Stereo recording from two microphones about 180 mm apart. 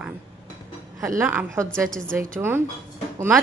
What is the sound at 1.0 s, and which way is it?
A woman's voice, 10° right (ahead or behind).